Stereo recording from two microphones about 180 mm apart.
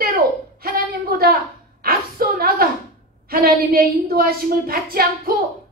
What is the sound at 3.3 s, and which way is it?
Speech, 55° right (ahead or behind).